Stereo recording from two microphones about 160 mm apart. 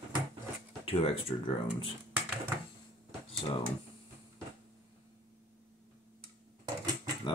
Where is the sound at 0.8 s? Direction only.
35° left (ahead or behind).